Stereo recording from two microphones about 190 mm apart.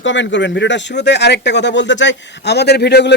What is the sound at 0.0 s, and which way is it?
Speech, 75° left (ahead or behind).